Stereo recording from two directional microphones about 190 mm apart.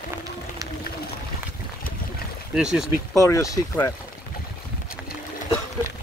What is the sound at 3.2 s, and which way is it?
Speech, 15° left (ahead or behind).